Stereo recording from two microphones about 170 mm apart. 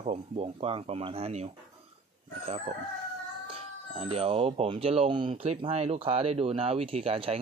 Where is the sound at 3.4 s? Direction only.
35° right (ahead or behind).